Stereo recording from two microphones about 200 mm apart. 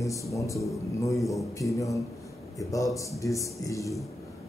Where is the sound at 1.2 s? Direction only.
Centre (ahead or behind).